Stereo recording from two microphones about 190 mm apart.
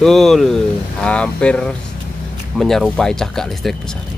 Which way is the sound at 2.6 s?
Centre (ahead or behind).